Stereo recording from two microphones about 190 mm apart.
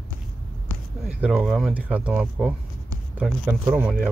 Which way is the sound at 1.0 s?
5° right (ahead or behind).